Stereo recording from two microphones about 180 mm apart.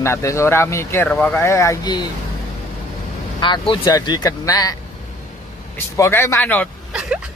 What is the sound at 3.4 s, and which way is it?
Speech, 25° left (ahead or behind).